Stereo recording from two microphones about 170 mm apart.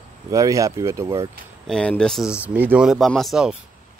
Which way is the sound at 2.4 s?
10° right (ahead or behind).